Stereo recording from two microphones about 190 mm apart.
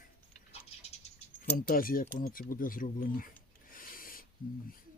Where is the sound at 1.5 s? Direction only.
50° left (ahead or behind).